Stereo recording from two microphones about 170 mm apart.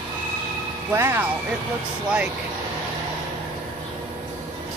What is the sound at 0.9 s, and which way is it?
Speech, 15° right (ahead or behind).